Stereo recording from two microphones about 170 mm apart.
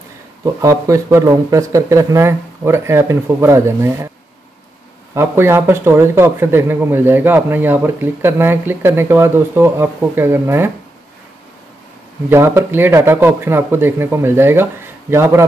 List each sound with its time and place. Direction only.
0.6 s speech: 20° right (ahead or behind)
5.1 s speech: 15° right (ahead or behind)
12.3 s speech: 15° right (ahead or behind)